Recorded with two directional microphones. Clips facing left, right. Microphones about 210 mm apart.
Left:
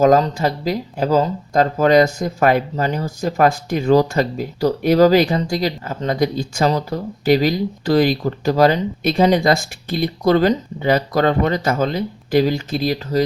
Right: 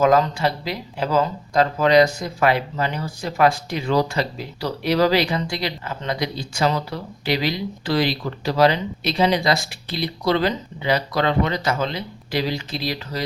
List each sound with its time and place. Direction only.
0.0 s speech: 40° left (ahead or behind)